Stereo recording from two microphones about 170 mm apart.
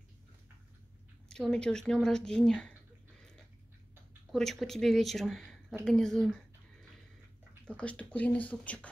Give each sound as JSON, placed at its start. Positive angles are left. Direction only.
{"t": 1.3, "sound": "a woman's voice", "side_deg": 5}
{"t": 4.3, "sound": "a woman's voice", "side_deg": 0}
{"t": 7.6, "sound": "speech", "side_deg": 5}